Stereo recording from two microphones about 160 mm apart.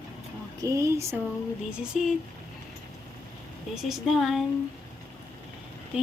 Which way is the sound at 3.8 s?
Centre (ahead or behind).